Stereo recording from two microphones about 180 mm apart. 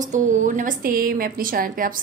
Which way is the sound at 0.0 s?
45° right (ahead or behind).